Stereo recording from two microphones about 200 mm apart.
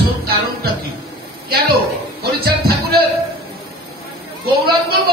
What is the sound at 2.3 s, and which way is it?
Speech, 50° right (ahead or behind).